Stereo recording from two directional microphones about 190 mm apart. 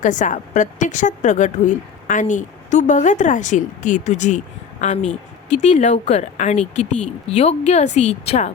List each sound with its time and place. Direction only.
0.0 s a woman's voice: 40° left (ahead or behind)